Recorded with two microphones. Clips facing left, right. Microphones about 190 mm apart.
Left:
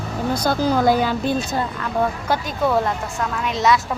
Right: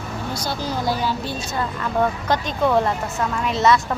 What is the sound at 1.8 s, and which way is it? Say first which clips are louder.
Speech: right 1 dB; 5° left (ahead or behind).